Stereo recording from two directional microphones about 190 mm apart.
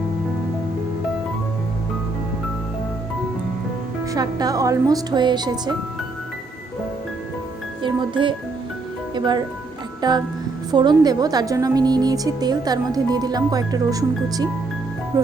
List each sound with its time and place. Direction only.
4.1 s a woman's voice: 20° right (ahead or behind)
7.8 s a woman's voice: 25° right (ahead or behind)
15.1 s music: 15° right (ahead or behind)